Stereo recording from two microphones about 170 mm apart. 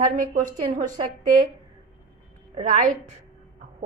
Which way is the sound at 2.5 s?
45° right (ahead or behind).